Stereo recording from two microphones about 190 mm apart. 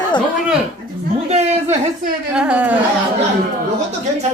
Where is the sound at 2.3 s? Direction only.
5° right (ahead or behind).